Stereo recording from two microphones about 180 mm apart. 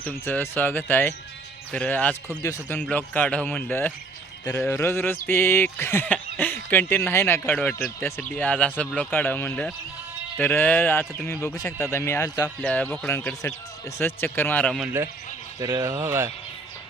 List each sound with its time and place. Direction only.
0.0 s speech: 10° left (ahead or behind)
14.8 s speech: 10° right (ahead or behind)